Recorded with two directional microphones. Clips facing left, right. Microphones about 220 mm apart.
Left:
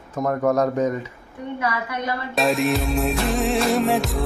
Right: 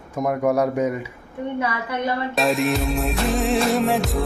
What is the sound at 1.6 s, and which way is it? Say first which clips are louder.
Speech: even; 25° right (ahead or behind).